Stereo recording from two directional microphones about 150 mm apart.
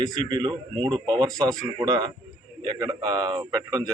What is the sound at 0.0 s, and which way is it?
A man's voice, 30° right (ahead or behind).